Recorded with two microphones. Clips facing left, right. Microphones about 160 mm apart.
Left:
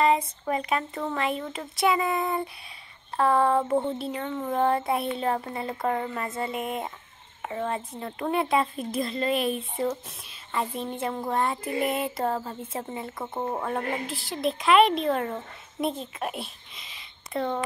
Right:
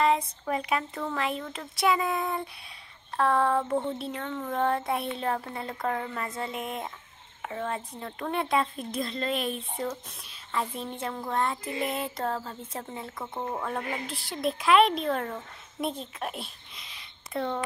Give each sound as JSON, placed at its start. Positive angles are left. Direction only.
{"t": 0.5, "sound": "speech", "side_deg": 0}
{"t": 13.2, "sound": "speech", "side_deg": 20}
{"t": 13.7, "sound": "a child's voice", "side_deg": 5}